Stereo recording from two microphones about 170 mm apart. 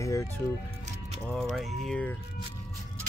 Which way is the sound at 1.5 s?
Centre (ahead or behind).